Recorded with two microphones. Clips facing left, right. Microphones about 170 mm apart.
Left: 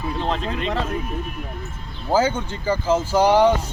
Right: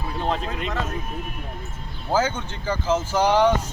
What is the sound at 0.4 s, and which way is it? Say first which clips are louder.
Speech: left 3 dB; 30° left (ahead or behind).